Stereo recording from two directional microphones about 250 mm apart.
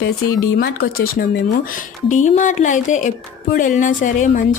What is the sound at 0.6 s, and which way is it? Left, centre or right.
A woman's voice, left.